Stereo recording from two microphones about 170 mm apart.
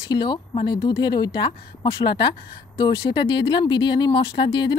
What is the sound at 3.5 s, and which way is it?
Speech, 25° left (ahead or behind).